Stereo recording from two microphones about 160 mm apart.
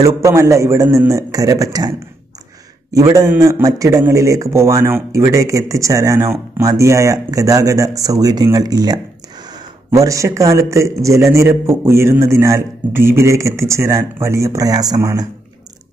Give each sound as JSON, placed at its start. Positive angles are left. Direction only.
{"t": 0.0, "sound": "a man's voice", "side_deg": -20}